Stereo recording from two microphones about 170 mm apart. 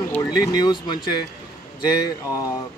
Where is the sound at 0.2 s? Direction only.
25° left (ahead or behind).